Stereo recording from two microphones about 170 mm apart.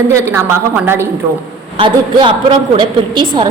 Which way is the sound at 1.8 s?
30° right (ahead or behind).